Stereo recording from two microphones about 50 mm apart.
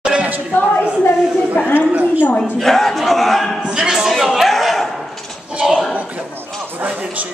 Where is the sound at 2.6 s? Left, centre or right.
Centre.